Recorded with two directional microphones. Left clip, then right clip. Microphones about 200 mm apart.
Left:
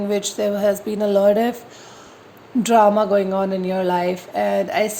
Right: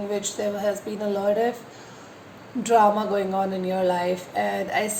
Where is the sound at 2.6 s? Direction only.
50° left (ahead or behind).